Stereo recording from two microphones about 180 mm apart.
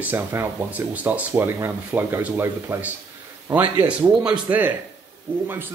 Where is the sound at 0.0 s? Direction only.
10° right (ahead or behind).